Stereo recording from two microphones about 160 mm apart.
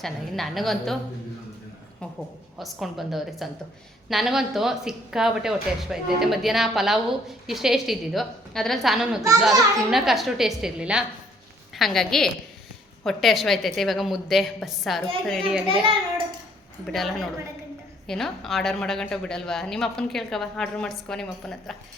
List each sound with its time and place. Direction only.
0.0 s speech: centre (ahead or behind)
2.6 s a woman's voice: centre (ahead or behind)
15.7 s a child's voice: 35° right (ahead or behind)
16.8 s speech: centre (ahead or behind)